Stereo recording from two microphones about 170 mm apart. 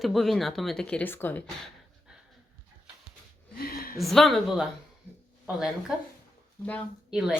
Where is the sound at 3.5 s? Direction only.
65° left (ahead or behind).